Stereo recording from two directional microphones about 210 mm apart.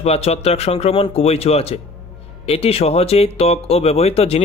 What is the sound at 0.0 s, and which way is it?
Speech, 30° left (ahead or behind).